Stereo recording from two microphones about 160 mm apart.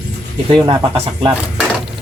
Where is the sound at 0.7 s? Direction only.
30° right (ahead or behind).